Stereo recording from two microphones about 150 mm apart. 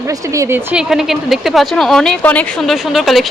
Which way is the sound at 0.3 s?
15° right (ahead or behind).